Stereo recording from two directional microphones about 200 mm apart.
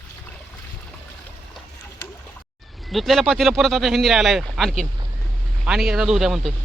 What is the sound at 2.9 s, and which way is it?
Speech, centre (ahead or behind).